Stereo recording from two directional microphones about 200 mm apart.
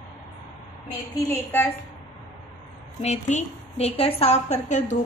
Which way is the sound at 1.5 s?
10° left (ahead or behind).